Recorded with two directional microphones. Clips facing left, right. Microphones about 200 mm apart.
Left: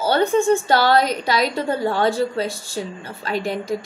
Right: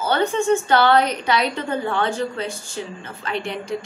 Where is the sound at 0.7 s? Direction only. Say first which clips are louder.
Even; 35° left (ahead or behind).